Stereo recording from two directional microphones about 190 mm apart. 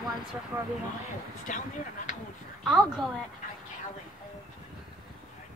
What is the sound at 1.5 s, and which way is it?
Speech, 40° left (ahead or behind).